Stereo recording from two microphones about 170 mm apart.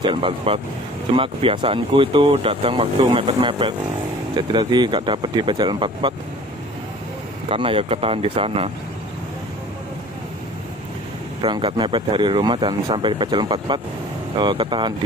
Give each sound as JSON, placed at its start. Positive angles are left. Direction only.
{"t": 0.0, "sound": "speech", "side_deg": -30}
{"t": 7.4, "sound": "speech", "side_deg": -30}
{"t": 11.4, "sound": "speech", "side_deg": -30}